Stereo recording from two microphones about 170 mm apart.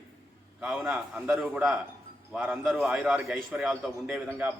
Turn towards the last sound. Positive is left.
turn(degrees=-5)  # may be behind; listen again after turning